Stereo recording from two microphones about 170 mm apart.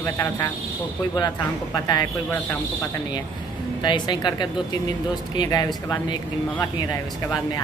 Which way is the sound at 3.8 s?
25° left (ahead or behind).